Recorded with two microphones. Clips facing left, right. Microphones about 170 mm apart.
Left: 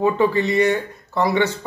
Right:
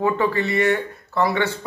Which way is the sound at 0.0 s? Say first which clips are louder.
Left 3 dB; 20° left (ahead or behind).